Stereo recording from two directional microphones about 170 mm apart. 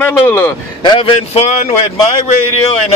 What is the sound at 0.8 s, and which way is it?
Speech, 30° left (ahead or behind).